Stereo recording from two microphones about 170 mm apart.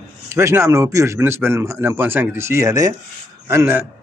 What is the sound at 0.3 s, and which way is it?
A man's voice, 15° right (ahead or behind).